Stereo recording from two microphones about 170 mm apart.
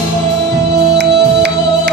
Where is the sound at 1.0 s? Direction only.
75° right (ahead or behind).